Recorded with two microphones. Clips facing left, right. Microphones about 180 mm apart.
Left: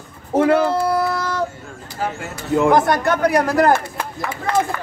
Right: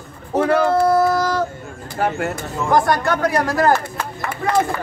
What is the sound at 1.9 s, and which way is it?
Speech, 60° right (ahead or behind).